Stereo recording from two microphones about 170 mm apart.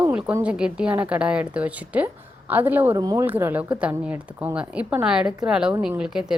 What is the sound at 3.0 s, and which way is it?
Speech, 20° right (ahead or behind).